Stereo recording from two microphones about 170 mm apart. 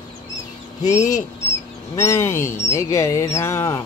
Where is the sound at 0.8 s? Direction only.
20° left (ahead or behind).